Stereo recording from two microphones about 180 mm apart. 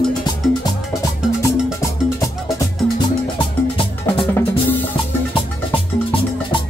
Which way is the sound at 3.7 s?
30° left (ahead or behind).